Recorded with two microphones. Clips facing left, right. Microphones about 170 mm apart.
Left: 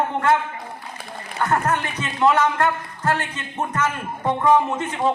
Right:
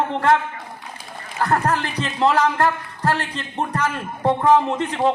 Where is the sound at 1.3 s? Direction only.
35° right (ahead or behind).